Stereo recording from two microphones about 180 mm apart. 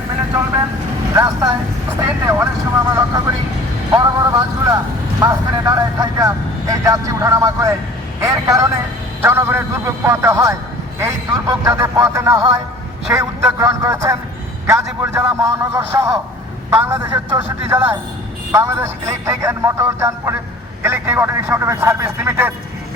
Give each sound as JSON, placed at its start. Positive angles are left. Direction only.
{"t": 1.1, "sound": "speech", "side_deg": -20}